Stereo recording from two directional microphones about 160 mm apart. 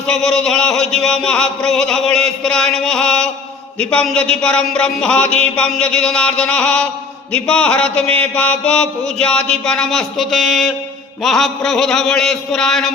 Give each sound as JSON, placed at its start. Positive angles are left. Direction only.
{"t": 0.1, "sound": "music", "side_deg": 5}
{"t": 3.8, "sound": "speech", "side_deg": 5}
{"t": 8.0, "sound": "mantra", "side_deg": -40}
{"t": 8.4, "sound": "music", "side_deg": 10}